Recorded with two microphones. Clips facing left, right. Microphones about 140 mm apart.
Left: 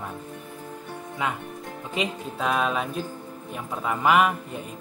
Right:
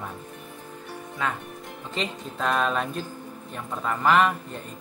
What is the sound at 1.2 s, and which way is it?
Speech, 15° left (ahead or behind).